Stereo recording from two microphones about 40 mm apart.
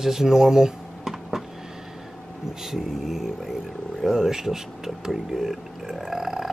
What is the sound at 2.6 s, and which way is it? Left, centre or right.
Speech, centre.